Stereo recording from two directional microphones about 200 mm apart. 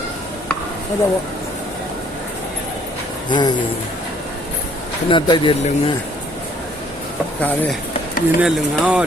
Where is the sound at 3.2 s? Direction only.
20° left (ahead or behind).